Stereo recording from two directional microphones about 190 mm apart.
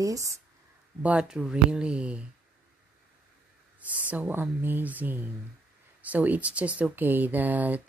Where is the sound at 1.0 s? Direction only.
5° right (ahead or behind).